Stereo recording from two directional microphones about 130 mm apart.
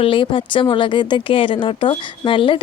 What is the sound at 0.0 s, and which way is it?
Speech, 40° left (ahead or behind).